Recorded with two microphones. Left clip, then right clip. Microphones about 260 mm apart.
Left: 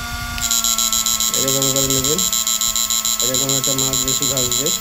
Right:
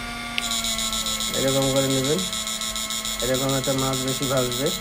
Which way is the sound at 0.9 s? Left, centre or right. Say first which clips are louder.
Left 6 dB; centre.